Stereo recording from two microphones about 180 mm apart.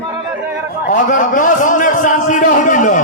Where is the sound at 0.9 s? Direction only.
45° left (ahead or behind).